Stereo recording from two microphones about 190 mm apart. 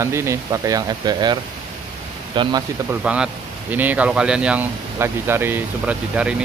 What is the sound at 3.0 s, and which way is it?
Speech, 5° right (ahead or behind).